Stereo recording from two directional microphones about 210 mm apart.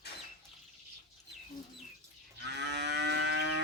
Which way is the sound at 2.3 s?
55° right (ahead or behind).